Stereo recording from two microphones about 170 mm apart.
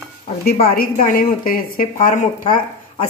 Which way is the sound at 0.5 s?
65° left (ahead or behind).